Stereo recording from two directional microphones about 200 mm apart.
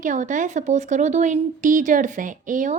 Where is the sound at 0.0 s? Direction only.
40° right (ahead or behind).